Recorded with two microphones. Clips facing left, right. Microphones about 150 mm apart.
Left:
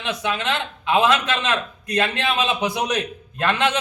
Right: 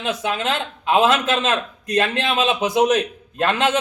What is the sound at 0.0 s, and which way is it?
Speech, 40° right (ahead or behind).